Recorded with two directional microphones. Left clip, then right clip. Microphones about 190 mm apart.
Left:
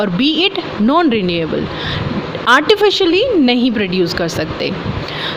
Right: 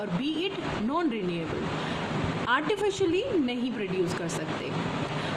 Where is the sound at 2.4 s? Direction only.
45° left (ahead or behind).